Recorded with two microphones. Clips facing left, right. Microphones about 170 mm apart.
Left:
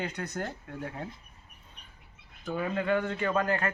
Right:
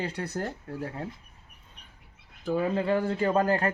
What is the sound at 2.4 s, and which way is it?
Speech, 35° right (ahead or behind).